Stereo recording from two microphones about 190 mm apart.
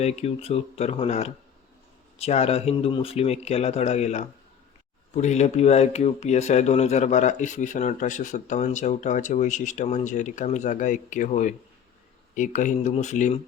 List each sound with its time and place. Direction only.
0.0 s speech: 35° left (ahead or behind)